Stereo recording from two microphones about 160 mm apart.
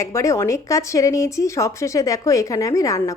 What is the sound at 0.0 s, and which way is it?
A woman's voice, 20° left (ahead or behind).